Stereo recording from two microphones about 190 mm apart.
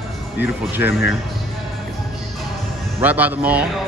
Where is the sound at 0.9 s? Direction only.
60° left (ahead or behind).